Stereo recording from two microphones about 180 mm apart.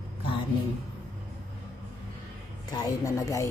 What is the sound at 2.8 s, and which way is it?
Speech, 20° left (ahead or behind).